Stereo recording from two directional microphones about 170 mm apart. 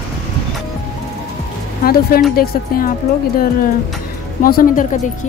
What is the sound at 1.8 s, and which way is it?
Speech, 60° left (ahead or behind).